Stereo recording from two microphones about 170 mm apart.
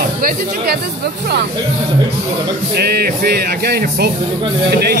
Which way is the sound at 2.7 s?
70° right (ahead or behind).